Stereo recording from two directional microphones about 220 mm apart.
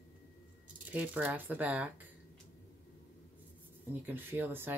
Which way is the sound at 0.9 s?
5° right (ahead or behind).